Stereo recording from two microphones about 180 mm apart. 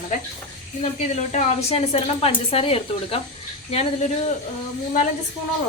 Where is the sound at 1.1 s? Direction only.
40° left (ahead or behind).